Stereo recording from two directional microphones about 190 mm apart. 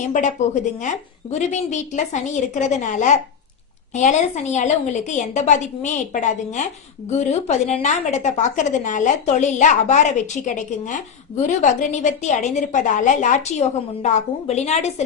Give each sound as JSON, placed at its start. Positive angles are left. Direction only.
{"t": 0.0, "sound": "a woman's voice", "side_deg": 40}